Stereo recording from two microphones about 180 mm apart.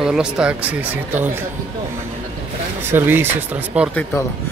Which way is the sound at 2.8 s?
10° right (ahead or behind).